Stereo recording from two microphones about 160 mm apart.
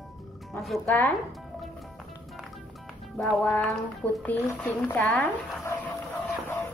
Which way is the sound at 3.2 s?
10° left (ahead or behind).